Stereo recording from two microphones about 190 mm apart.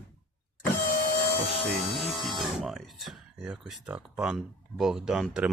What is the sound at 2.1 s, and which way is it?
Speech, centre (ahead or behind).